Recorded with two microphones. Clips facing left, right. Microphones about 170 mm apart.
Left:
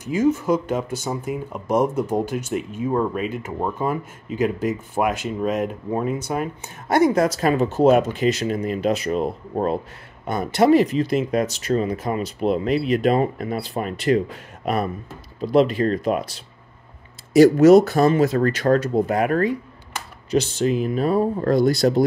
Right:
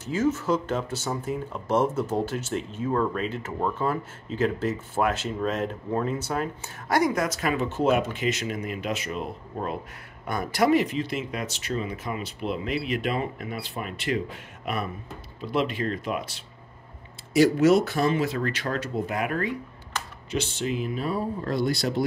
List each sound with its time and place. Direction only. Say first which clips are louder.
0.0 s speech: left 5 dB; 15° left (ahead or behind)
7.0 s speech: left 8 dB; 30° left (ahead or behind)
10.2 s speech: left 6 dB; 25° left (ahead or behind); by 22.0 s 45° left (ahead or behind)